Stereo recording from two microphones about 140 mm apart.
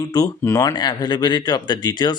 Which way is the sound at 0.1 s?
25° left (ahead or behind).